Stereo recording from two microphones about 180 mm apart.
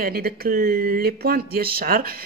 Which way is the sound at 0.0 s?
55° right (ahead or behind).